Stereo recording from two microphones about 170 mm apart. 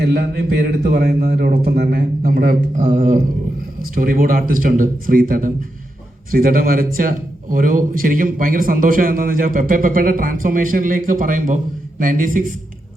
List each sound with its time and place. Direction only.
0.0 s a man's voice: 70° right (ahead or behind); by 12.5 s 55° right (ahead or behind)